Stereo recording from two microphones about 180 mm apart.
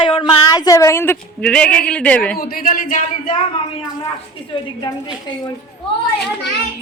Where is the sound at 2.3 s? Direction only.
55° left (ahead or behind).